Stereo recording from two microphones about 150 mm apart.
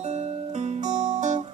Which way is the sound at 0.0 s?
50° right (ahead or behind).